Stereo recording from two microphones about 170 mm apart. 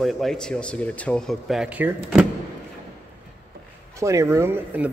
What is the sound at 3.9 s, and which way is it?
Speech, 15° right (ahead or behind).